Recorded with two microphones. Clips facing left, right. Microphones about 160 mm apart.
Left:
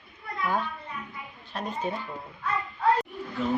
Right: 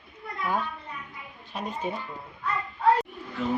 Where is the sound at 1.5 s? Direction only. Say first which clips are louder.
Even; 5° right (ahead or behind).